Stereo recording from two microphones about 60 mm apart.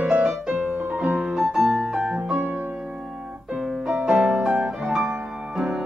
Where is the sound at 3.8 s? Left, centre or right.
Centre.